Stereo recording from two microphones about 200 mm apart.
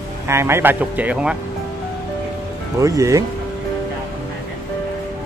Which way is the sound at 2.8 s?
15° right (ahead or behind).